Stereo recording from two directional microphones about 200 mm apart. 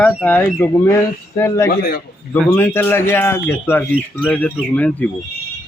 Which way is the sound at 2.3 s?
5° left (ahead or behind).